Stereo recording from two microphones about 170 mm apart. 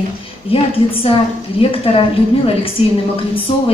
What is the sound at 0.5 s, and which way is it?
A woman's voice, 35° left (ahead or behind).